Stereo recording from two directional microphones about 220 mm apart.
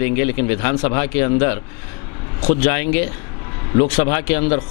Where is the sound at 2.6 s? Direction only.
15° left (ahead or behind).